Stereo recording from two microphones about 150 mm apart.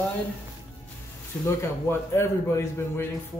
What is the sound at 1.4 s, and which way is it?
A man's voice, 15° left (ahead or behind).